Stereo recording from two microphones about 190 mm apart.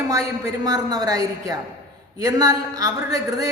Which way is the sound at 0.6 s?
20° right (ahead or behind).